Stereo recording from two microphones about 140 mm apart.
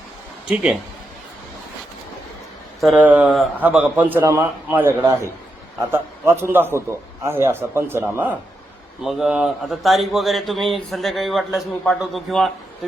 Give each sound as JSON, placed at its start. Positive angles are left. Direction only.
{"t": 0.4, "sound": "a man's voice", "side_deg": -10}
{"t": 2.9, "sound": "a man's voice", "side_deg": -10}